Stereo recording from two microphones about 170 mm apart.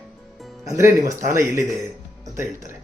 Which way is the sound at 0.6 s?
20° right (ahead or behind).